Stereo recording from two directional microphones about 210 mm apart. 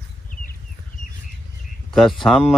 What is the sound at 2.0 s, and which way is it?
Speech, centre (ahead or behind).